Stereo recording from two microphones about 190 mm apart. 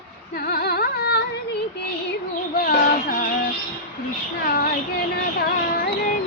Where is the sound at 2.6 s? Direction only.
45° left (ahead or behind).